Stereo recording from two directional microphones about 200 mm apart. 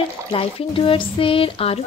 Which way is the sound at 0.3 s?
30° left (ahead or behind).